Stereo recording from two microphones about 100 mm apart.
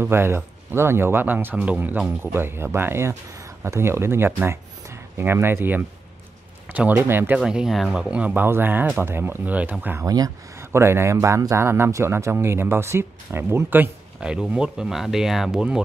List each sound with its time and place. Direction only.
0.0 s speech: 25° right (ahead or behind)
7.3 s speech: 10° right (ahead or behind)
10.0 s speech: 40° right (ahead or behind)
10.6 s speech: 25° right (ahead or behind); by 15.8 s 5° right (ahead or behind)